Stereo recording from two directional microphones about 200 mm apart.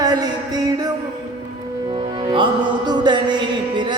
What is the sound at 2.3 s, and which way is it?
Music, 25° right (ahead or behind).